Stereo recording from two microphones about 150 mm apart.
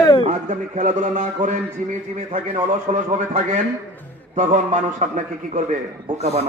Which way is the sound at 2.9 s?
55° right (ahead or behind).